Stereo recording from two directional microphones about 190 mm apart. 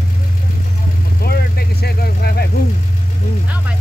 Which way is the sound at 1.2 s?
55° left (ahead or behind).